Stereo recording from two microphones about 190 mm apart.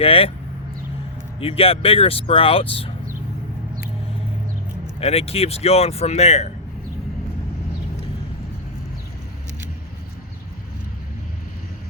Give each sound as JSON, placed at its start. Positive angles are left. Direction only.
{"t": 0.0, "sound": "speech", "side_deg": 30}
{"t": 1.4, "sound": "speech", "side_deg": 30}
{"t": 4.9, "sound": "speech", "side_deg": 30}